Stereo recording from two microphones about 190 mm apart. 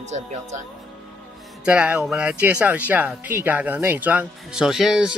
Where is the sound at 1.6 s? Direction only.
5° right (ahead or behind).